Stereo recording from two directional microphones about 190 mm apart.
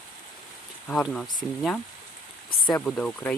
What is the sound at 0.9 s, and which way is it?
Speech, 5° left (ahead or behind).